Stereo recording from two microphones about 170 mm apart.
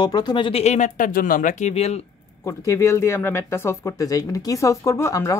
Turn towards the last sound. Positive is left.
turn(degrees=20)  # may be behind; listen again after turning